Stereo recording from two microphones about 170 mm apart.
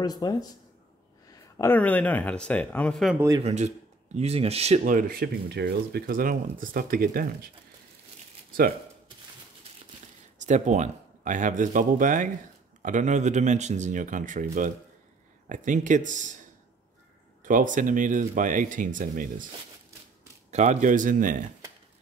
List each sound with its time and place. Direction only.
0.0 s speech: 20° left (ahead or behind); by 3.2 s centre (ahead or behind)
3.2 s a man's voice: 20° right (ahead or behind)
3.4 s speech: 40° right (ahead or behind); by 7.2 s 55° right (ahead or behind)
10.4 s speech: 45° right (ahead or behind)
17.4 s speech: 50° right (ahead or behind)
20.5 s speech: 45° right (ahead or behind)